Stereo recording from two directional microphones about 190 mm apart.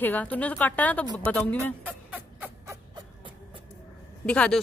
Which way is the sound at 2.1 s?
5° right (ahead or behind).